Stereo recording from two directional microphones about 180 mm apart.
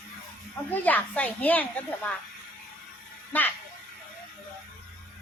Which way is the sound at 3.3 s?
10° left (ahead or behind).